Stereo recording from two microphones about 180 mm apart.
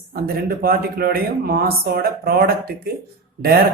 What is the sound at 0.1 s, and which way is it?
Speech, 55° right (ahead or behind).